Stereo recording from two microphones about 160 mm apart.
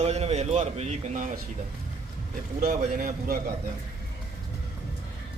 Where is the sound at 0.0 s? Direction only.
40° right (ahead or behind).